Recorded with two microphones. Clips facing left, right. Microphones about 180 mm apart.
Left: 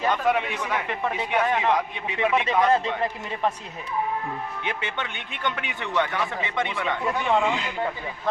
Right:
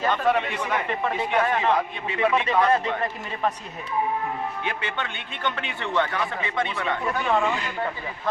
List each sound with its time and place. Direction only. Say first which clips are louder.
0.0 s a man's voice: right 1 dB; 10° left (ahead or behind)
4.6 s a man's voice: right 1 dB; 20° left (ahead or behind)